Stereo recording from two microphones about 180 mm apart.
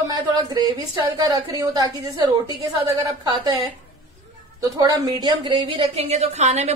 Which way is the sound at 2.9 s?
25° right (ahead or behind).